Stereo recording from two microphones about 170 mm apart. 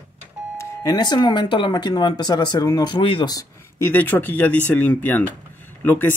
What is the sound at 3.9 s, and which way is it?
Speech, 10° left (ahead or behind).